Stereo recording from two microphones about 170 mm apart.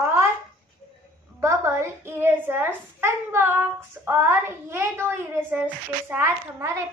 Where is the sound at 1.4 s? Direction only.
15° right (ahead or behind).